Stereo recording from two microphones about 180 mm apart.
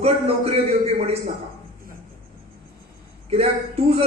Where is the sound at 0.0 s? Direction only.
35° right (ahead or behind).